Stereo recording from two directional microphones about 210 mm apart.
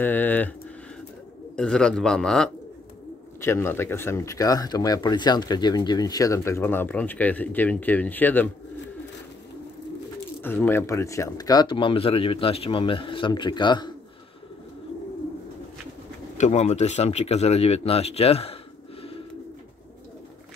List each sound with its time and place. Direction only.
0.0 s speech: 10° left (ahead or behind)
1.6 s speech: 5° left (ahead or behind)
10.4 s speech: 10° left (ahead or behind)
16.3 s speech: 35° left (ahead or behind)